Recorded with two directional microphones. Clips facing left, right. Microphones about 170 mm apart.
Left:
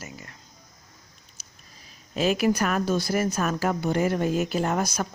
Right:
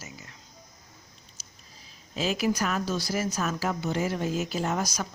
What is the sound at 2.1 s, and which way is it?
Speech, 55° left (ahead or behind).